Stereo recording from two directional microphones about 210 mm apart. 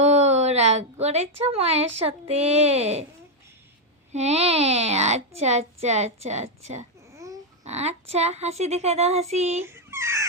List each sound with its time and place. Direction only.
0.0 s a woman's voice: 30° right (ahead or behind)
4.1 s a child's voice: 30° right (ahead or behind)
7.2 s babbling: 15° right (ahead or behind)
7.6 s a child's voice: 30° right (ahead or behind)
9.9 s a sound: 15° right (ahead or behind)